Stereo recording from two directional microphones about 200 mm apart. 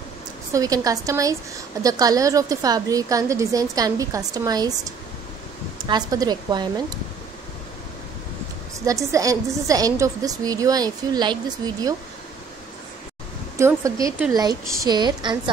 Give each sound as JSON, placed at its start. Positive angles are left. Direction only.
{"t": 0.5, "sound": "a woman's voice", "side_deg": -15}
{"t": 8.8, "sound": "a woman's voice", "side_deg": -15}
{"t": 13.6, "sound": "a woman's voice", "side_deg": -15}